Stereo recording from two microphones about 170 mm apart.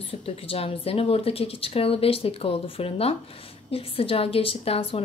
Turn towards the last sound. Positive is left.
turn(degrees=35)  # may be behind; listen again after turning